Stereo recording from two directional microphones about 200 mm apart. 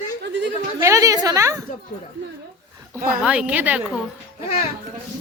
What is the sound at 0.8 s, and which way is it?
Speech, 15° right (ahead or behind).